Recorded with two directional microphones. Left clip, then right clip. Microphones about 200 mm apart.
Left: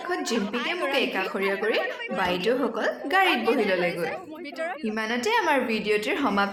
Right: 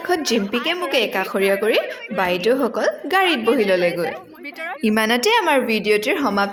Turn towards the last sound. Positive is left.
turn(degrees=-25)  # may be behind; listen again after turning